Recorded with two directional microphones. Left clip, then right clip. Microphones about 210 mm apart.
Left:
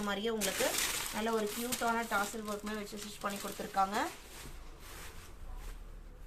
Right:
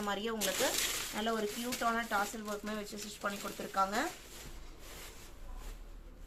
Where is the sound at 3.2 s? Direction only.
Centre (ahead or behind).